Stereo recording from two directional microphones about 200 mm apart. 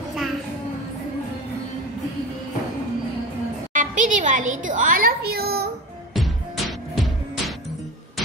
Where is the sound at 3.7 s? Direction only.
40° right (ahead or behind).